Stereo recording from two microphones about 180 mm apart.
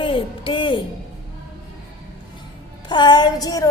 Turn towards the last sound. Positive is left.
turn(degrees=20)  # may be behind; listen again after turning